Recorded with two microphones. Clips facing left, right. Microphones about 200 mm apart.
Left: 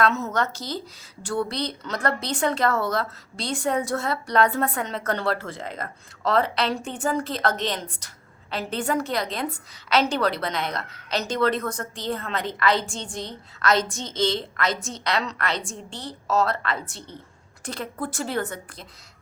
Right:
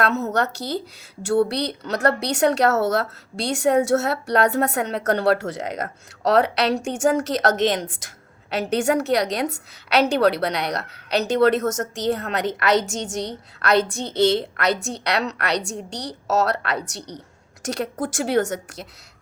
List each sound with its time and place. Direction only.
0.1 s a woman's voice: 40° right (ahead or behind)
1.5 s a woman's voice: 65° right (ahead or behind)
6.8 s a woman's voice: 80° right
7.8 s a woman's voice: 90° right; by 11.5 s 65° right (ahead or behind)
11.6 s a woman's voice: 45° right (ahead or behind)
13.6 s a woman's voice: 60° right (ahead or behind)
15.7 s a woman's voice: 40° right (ahead or behind)
16.0 s a woman's voice: 70° right (ahead or behind)